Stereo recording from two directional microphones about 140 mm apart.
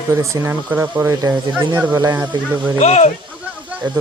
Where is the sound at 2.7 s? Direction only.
50° left (ahead or behind).